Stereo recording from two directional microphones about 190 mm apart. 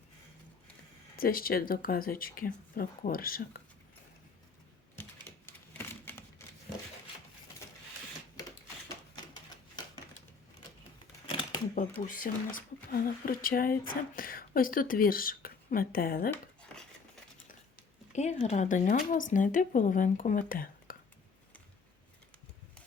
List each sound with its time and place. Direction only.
1.1 s speech: 50° left (ahead or behind)
5.2 s typewriter: 10° left (ahead or behind)
9.1 s typewriter: 20° left (ahead or behind)
11.3 s a sound: 25° left (ahead or behind)
12.0 s speech: 45° left (ahead or behind)
16.3 s a sound: 5° left (ahead or behind)
18.1 s speech: 35° left (ahead or behind)